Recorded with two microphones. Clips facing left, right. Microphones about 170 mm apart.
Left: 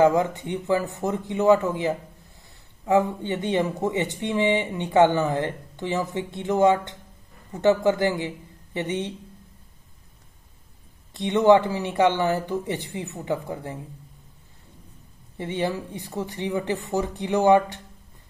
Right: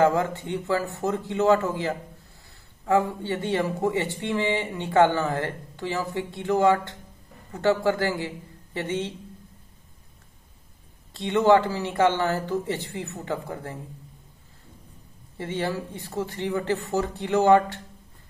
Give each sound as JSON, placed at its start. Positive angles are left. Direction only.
{"t": 0.0, "sound": "speech", "side_deg": 15}
{"t": 11.1, "sound": "speech", "side_deg": 20}
{"t": 15.3, "sound": "speech", "side_deg": 15}